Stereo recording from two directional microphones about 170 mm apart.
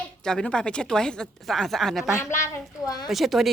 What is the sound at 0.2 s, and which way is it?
Speech, 5° left (ahead or behind).